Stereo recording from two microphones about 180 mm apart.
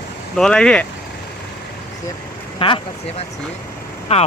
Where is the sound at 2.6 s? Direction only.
30° left (ahead or behind).